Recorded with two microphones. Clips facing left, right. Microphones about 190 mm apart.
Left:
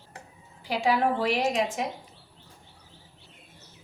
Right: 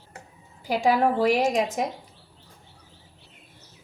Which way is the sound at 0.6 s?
45° right (ahead or behind).